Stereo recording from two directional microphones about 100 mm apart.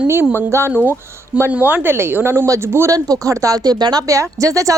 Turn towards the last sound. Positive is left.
turn(degrees=-35)  # may be behind; listen again after turning